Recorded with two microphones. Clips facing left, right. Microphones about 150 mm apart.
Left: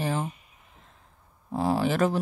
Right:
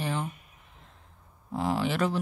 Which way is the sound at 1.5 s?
40° left (ahead or behind).